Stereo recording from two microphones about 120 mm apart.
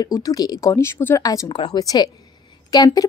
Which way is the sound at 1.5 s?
35° left (ahead or behind).